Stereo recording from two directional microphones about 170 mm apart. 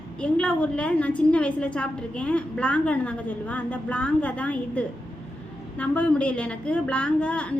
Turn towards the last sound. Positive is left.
turn(degrees=5)  # may be behind; listen again after turning